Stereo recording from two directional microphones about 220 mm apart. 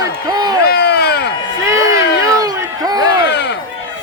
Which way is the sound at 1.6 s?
15° right (ahead or behind).